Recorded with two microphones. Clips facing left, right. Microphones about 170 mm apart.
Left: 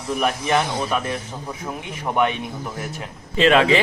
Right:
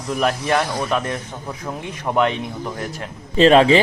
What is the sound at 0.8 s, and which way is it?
A man's voice, 5° left (ahead or behind).